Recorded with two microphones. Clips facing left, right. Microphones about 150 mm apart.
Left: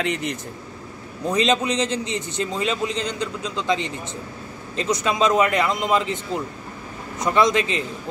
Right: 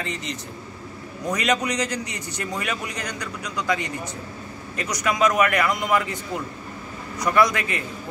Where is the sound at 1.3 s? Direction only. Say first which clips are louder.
Left 3 dB; 25° left (ahead or behind).